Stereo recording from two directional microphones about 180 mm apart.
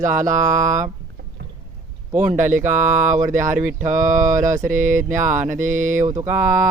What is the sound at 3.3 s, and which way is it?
Speech, 45° right (ahead or behind).